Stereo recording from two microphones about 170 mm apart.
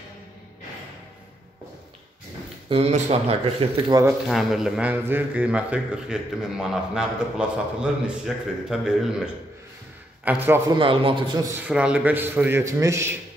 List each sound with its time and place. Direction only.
2.7 s speech: 40° right (ahead or behind)
3.9 s a man's voice: 25° right (ahead or behind)
4.3 s a man's voice: centre (ahead or behind)
10.8 s a man's voice: 30° right (ahead or behind)
11.6 s a man's voice: 5° right (ahead or behind)